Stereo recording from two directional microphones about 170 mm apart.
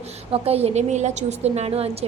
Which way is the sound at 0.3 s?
35° right (ahead or behind).